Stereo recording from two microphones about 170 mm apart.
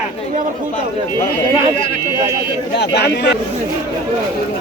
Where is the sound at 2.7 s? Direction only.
75° left (ahead or behind).